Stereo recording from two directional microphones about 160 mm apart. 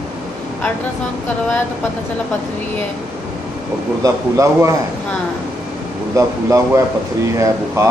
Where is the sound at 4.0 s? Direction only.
20° right (ahead or behind).